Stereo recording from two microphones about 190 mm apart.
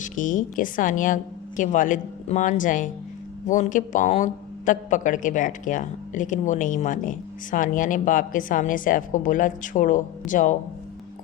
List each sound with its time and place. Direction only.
0.0 s a man's voice: 40° left (ahead or behind)